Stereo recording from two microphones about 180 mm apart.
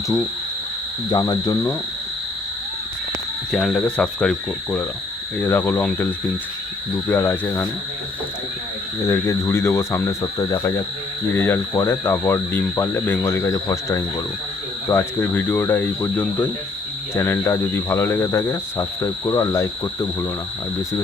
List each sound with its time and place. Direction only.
1.1 s speech: 20° left (ahead or behind)
3.5 s speech: centre (ahead or behind)
5.4 s cricket: 10° left (ahead or behind)
7.1 s cricket: 10° left (ahead or behind)
9.0 s cricket: 15° left (ahead or behind)